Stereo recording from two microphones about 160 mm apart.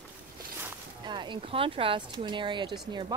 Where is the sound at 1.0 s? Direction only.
30° right (ahead or behind).